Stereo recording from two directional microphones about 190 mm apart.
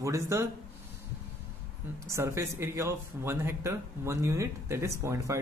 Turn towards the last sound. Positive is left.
turn(degrees=-15)  # may be behind; listen again after turning